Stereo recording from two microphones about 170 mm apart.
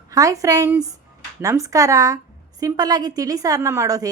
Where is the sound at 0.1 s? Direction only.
20° right (ahead or behind).